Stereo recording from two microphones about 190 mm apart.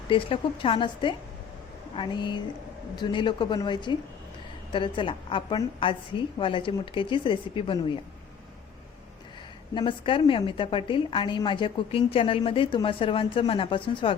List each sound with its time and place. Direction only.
0.1 s a woman's voice: 30° left (ahead or behind)
9.7 s a woman's voice: 25° left (ahead or behind)